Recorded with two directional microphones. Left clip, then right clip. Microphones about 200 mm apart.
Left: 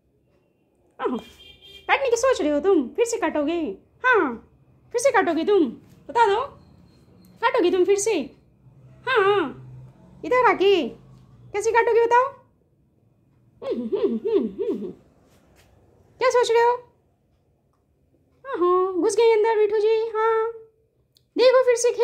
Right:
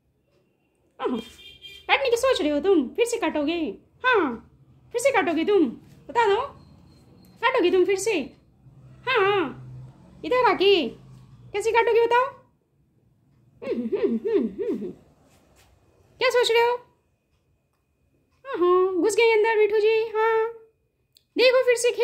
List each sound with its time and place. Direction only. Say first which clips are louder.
0.9 s a sound: left 1 dB; 10° left (ahead or behind)
1.9 s a woman's voice: left 1 dB; 10° left (ahead or behind)
13.6 s a woman's voice: left 1 dB; 5° left (ahead or behind)
16.2 s speech: left 2 dB; centre (ahead or behind)
18.4 s a woman's voice: even; 5° left (ahead or behind)